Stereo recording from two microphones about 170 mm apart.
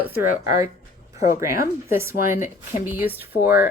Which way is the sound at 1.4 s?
15° right (ahead or behind).